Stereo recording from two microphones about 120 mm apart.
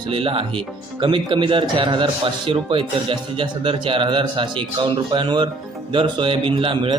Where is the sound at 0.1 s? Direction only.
50° right (ahead or behind).